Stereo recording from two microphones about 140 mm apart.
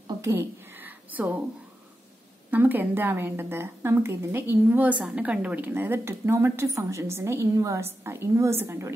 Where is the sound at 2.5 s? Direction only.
15° right (ahead or behind).